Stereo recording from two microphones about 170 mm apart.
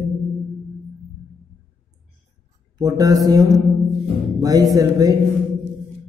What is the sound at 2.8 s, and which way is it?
Mantra, 20° right (ahead or behind).